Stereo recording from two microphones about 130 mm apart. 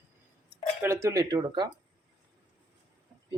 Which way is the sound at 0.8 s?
20° right (ahead or behind).